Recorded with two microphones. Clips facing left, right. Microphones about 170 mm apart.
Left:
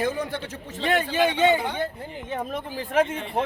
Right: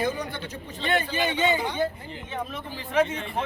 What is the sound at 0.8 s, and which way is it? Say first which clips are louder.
Speech: left 4 dB; 85° left.